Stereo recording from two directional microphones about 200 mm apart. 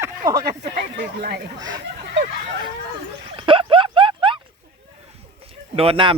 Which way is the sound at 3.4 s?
25° right (ahead or behind).